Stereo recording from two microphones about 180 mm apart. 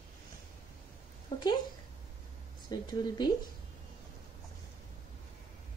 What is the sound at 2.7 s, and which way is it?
Speech, 20° left (ahead or behind).